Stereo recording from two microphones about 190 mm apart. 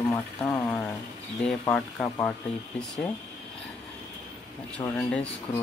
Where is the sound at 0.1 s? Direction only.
15° left (ahead or behind).